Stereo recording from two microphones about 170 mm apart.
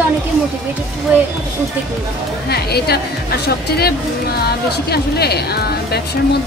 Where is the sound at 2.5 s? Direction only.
70° left (ahead or behind).